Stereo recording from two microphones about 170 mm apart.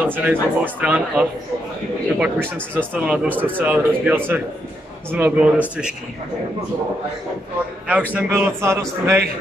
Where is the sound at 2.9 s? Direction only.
5° right (ahead or behind).